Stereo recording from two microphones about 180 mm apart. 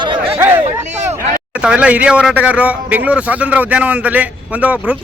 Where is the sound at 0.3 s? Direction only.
10° right (ahead or behind).